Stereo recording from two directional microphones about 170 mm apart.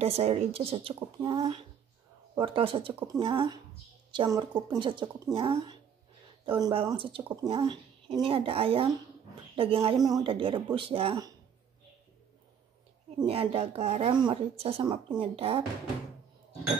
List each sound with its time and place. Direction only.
0.0 s a woman's voice: 35° right (ahead or behind)
13.2 s speech: 35° right (ahead or behind)